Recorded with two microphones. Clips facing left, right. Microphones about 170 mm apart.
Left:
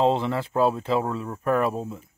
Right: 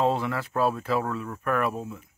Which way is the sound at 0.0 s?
25° left (ahead or behind).